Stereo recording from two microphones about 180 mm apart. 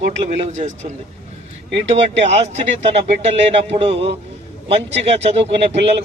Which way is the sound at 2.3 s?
35° right (ahead or behind).